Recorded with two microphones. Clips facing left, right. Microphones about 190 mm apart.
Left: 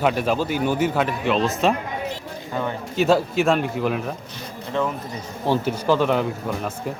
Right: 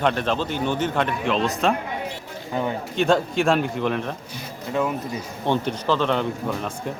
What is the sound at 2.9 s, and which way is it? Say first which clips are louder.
Speech: left 2 dB; 5° left (ahead or behind).